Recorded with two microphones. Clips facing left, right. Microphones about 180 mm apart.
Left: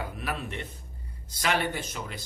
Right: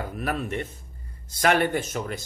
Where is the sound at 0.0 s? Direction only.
45° right (ahead or behind).